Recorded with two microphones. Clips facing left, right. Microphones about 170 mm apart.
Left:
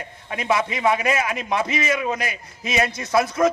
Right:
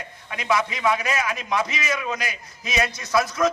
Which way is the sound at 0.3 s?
25° left (ahead or behind).